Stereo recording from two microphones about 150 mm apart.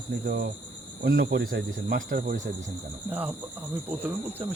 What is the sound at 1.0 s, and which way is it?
Speech, 90° right.